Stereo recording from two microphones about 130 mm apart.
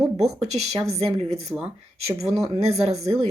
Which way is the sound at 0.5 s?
60° right (ahead or behind).